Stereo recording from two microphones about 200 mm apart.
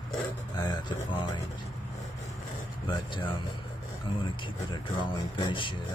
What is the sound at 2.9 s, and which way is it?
Speech, 25° left (ahead or behind).